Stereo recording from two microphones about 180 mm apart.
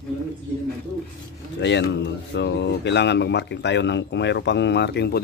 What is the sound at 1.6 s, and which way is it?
Speech, 75° left (ahead or behind).